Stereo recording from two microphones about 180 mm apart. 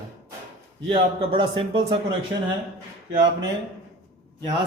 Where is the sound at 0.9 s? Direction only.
30° right (ahead or behind).